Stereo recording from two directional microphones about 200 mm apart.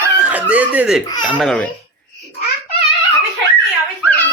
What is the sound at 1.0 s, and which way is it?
Speech, 20° left (ahead or behind).